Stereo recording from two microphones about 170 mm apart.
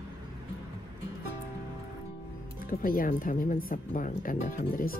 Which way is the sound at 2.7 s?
60° left (ahead or behind).